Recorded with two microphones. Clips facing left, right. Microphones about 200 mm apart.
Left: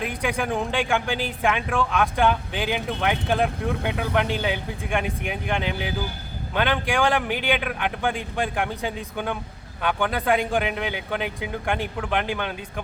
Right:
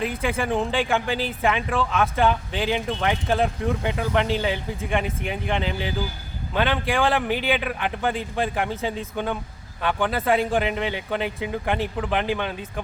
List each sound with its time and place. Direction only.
0.0 s speech: centre (ahead or behind)